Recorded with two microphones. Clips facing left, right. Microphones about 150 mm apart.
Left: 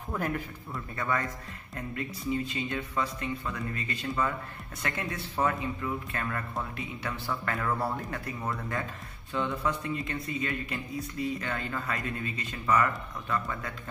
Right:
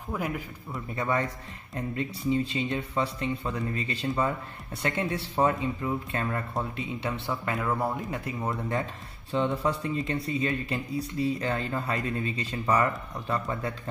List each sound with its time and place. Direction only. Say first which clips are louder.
0.1 s a man's voice: even; 5° right (ahead or behind)
0.7 s speech: right 3 dB; 25° right (ahead or behind)